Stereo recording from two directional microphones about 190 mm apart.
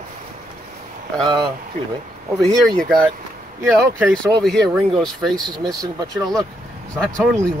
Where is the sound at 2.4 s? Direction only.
Centre (ahead or behind).